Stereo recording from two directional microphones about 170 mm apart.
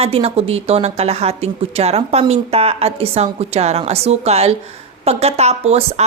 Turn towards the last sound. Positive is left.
turn(degrees=-40)  # may be behind; listen again after turning